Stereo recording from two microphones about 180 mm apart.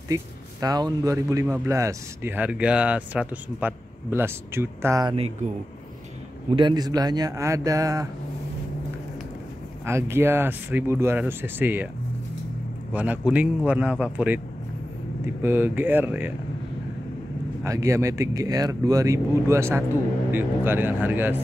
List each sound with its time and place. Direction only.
0.1 s speech: 20° right (ahead or behind)
6.5 s a man's voice: 25° right (ahead or behind)
9.8 s speech: 15° right (ahead or behind)
12.9 s speech: 10° right (ahead or behind)
15.4 s speech: 10° right (ahead or behind)
17.6 s speech: 15° right (ahead or behind)